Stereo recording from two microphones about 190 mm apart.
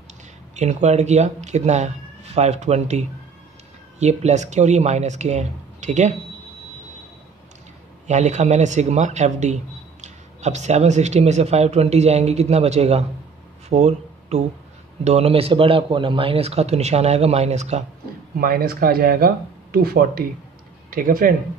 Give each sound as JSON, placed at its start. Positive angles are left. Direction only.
{"t": 0.6, "sound": "speech", "side_deg": -35}
{"t": 8.1, "sound": "speech", "side_deg": -35}
{"t": 18.4, "sound": "speech", "side_deg": -50}